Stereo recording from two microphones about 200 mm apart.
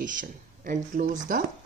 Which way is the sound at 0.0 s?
40° right (ahead or behind).